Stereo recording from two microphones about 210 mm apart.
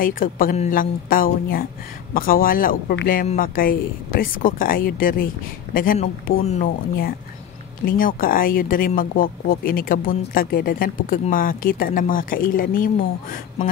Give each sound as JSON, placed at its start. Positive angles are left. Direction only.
{"t": 0.0, "sound": "speech", "side_deg": 40}
{"t": 7.8, "sound": "speech", "side_deg": 40}